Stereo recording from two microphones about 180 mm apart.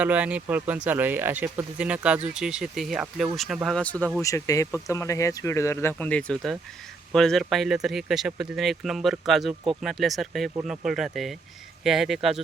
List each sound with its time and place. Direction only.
0.0 s speech: 10° right (ahead or behind)